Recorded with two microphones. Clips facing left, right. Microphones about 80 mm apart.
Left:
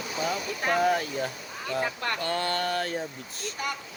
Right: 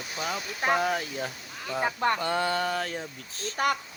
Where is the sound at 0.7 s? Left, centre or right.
Centre.